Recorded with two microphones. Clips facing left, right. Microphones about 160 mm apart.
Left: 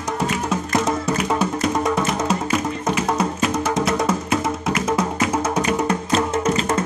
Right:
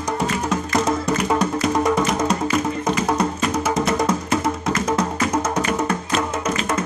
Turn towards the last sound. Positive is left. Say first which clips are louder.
# left 3 dB
turn(degrees=25)  # may be behind; listen again after turning